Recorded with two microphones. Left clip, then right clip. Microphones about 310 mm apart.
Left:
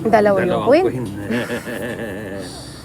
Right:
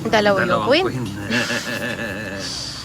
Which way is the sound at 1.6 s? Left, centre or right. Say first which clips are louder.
Right 1 dB; right.